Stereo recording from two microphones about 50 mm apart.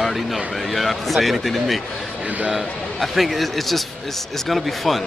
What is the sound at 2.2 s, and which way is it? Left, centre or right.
Speech, right.